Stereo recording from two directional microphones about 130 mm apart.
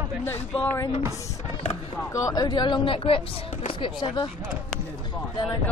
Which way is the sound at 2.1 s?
30° left (ahead or behind).